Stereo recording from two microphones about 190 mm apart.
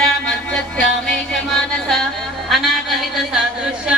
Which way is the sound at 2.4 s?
Centre (ahead or behind).